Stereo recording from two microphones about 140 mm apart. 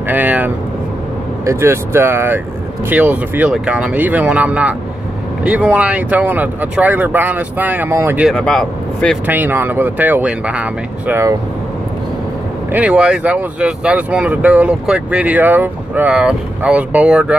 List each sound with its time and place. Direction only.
0.1 s speech: 10° right (ahead or behind)
8.3 s speech: 5° left (ahead or behind)
9.2 s speech: 15° right (ahead or behind)
12.7 s speech: 10° right (ahead or behind)